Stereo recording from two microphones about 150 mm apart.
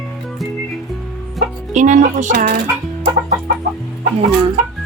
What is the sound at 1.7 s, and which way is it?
Speech, 55° right (ahead or behind).